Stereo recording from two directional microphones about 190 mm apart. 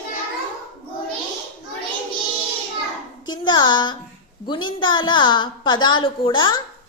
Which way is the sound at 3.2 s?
20° left (ahead or behind).